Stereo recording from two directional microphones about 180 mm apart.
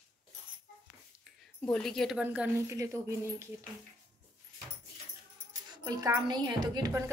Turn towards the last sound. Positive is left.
turn(degrees=-20)  # may be behind; listen again after turning